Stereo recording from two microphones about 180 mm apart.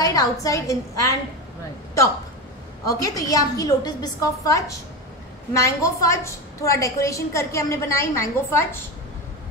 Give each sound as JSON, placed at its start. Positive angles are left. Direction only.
{"t": 0.0, "sound": "a woman's voice", "side_deg": 20}
{"t": 2.9, "sound": "a woman's voice", "side_deg": 20}